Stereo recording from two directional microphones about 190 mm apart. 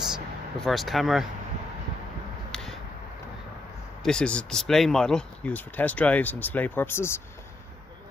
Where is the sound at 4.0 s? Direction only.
5° left (ahead or behind).